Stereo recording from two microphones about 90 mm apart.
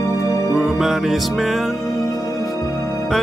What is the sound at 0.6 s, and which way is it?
Music, centre (ahead or behind).